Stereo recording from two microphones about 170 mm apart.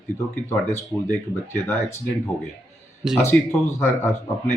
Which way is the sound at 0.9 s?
15° left (ahead or behind).